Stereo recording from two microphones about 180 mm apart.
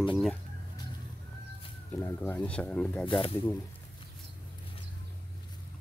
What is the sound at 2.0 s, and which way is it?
Speech, 10° left (ahead or behind).